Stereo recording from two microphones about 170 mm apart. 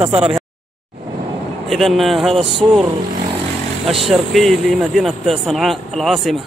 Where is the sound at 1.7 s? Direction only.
Centre (ahead or behind).